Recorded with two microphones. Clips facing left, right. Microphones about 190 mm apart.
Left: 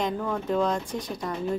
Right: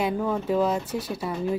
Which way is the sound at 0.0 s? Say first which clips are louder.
Right 3 dB; 10° right (ahead or behind).